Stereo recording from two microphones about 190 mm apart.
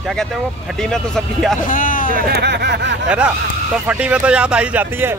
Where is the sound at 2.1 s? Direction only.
60° right (ahead or behind).